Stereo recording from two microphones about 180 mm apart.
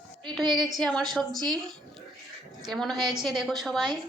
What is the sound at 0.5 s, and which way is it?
Speech, centre (ahead or behind).